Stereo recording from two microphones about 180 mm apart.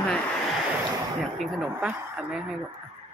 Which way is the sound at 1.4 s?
Centre (ahead or behind).